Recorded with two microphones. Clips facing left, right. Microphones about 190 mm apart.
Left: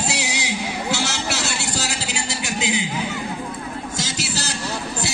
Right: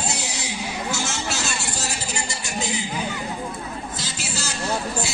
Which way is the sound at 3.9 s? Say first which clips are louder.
Left 5 dB; 85° left.